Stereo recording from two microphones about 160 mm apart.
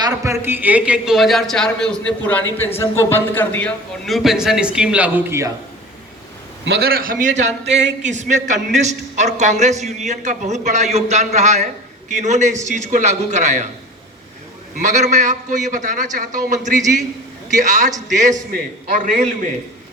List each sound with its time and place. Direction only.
0.0 s a man's voice: 15° right (ahead or behind); by 3.7 s 10° left (ahead or behind)
4.0 s a man's voice: centre (ahead or behind)
6.7 s a man's voice: 75° right (ahead or behind); by 13.7 s 50° right (ahead or behind)
14.8 s a man's voice: 50° right (ahead or behind)